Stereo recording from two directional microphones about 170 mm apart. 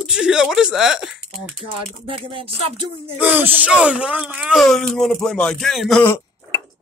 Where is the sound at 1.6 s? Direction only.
30° right (ahead or behind).